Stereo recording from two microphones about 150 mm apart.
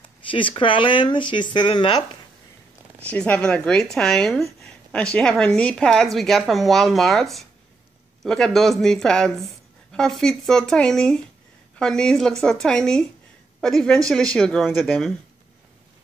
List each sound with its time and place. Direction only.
0.0 s speech: 35° left (ahead or behind)
3.0 s a woman's voice: 10° left (ahead or behind)